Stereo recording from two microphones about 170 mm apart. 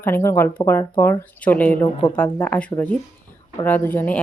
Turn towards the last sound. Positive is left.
turn(degrees=10)  # may be behind; listen again after turning